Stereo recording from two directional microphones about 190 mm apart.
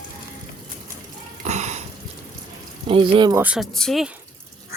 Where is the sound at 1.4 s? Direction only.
35° right (ahead or behind).